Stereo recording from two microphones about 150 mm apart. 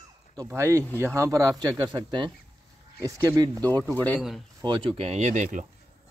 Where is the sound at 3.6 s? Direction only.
10° left (ahead or behind).